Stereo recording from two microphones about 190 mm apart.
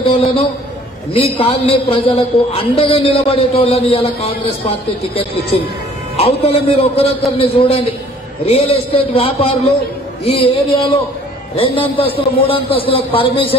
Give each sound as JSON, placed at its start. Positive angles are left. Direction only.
{"t": 1.1, "sound": "a man's voice", "side_deg": 30}